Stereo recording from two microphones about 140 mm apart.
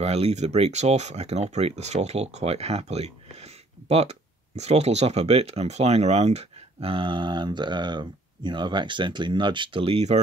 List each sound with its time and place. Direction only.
0.0 s speech: 50° right (ahead or behind)